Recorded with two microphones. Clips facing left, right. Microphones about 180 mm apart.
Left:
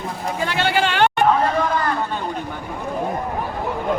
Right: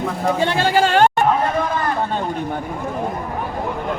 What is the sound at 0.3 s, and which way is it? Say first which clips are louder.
Speech: right 2 dB; 35° right (ahead or behind).